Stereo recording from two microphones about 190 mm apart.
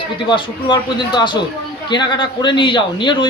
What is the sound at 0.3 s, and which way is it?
A man's voice, 25° left (ahead or behind).